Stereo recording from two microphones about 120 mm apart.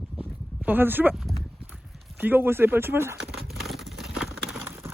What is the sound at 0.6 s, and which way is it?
Speech, 15° right (ahead or behind).